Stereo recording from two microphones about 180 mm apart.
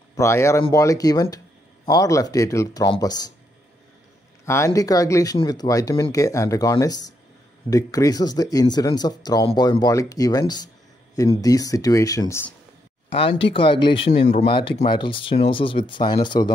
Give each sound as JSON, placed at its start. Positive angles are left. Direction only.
{"t": 0.1, "sound": "speech", "side_deg": 15}
{"t": 4.5, "sound": "speech", "side_deg": 15}
{"t": 13.1, "sound": "speech", "side_deg": 30}